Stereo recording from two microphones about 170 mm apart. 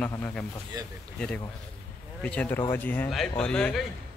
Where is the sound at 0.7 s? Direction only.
25° right (ahead or behind).